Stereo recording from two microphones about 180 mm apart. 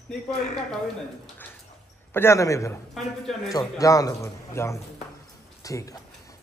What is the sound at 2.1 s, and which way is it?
A man's voice, 15° left (ahead or behind).